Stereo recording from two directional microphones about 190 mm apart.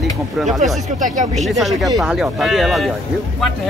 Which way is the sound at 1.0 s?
40° right (ahead or behind).